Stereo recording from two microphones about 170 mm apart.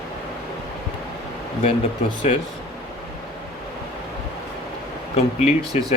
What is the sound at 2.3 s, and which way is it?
Speech, 40° left (ahead or behind).